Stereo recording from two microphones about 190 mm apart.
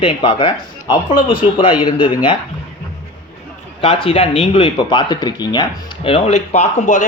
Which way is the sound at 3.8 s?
30° left (ahead or behind).